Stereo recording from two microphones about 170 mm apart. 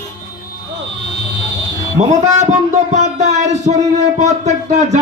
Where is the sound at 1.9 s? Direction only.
40° right (ahead or behind).